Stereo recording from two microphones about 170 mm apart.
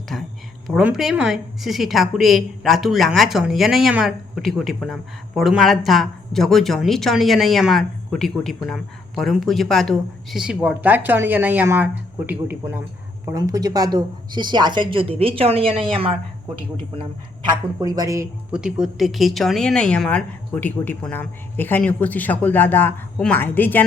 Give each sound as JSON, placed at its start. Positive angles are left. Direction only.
{"t": 0.7, "sound": "speech", "side_deg": -5}
{"t": 18.5, "sound": "a woman's voice", "side_deg": -5}